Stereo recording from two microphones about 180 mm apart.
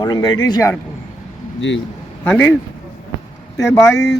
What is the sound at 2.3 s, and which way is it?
Speech, 10° left (ahead or behind).